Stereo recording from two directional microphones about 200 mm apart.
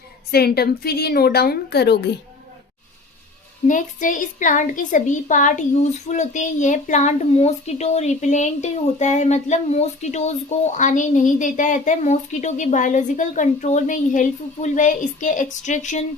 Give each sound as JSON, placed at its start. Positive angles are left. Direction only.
{"t": 0.3, "sound": "a woman's voice", "side_deg": 50}
{"t": 3.7, "sound": "a woman's voice", "side_deg": 40}